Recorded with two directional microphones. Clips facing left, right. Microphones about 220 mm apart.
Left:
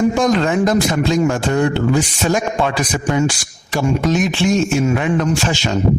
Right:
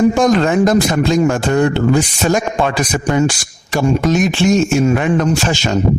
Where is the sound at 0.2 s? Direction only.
45° right (ahead or behind).